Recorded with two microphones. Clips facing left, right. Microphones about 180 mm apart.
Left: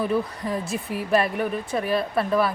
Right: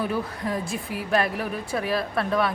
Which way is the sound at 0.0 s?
Centre (ahead or behind).